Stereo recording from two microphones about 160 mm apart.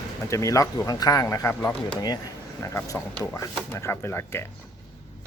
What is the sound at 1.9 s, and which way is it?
Speech, 25° left (ahead or behind).